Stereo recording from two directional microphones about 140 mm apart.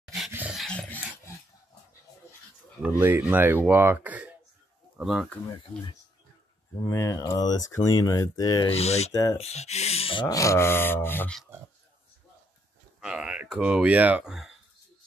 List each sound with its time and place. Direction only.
0.0 s dog: centre (ahead or behind)
3.0 s speech: 15° right (ahead or behind)
6.8 s speech: 20° left (ahead or behind)
8.6 s speech: 50° left (ahead or behind)
10.2 s a sound: 25° left (ahead or behind)
13.0 s speech: 5° right (ahead or behind)